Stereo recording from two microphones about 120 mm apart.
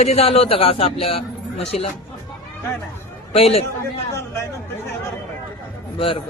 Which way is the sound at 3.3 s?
55° left (ahead or behind).